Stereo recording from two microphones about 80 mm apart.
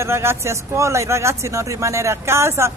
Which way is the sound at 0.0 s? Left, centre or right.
Right.